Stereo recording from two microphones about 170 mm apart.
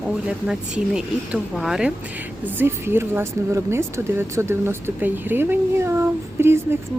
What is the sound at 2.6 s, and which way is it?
Speech, 15° right (ahead or behind).